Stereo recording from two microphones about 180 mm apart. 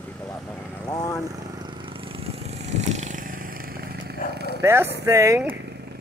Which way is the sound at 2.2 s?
35° right (ahead or behind).